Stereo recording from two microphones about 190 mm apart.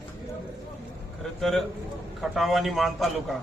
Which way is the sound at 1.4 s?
Centre (ahead or behind).